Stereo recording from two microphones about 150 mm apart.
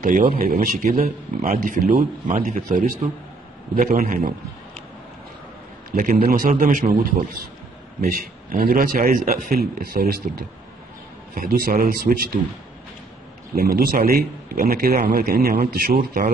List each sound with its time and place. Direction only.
0.0 s speech: 60° right (ahead or behind)
0.4 s a man's voice: 80° right
1.4 s a man's voice: 60° right (ahead or behind)
5.9 s a man's voice: 65° right (ahead or behind); by 10.4 s 85° right
11.3 s a man's voice: 70° right (ahead or behind)
13.6 s a man's voice: 80° right